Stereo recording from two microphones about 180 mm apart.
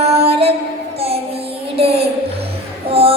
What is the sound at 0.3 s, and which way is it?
Music, 35° right (ahead or behind).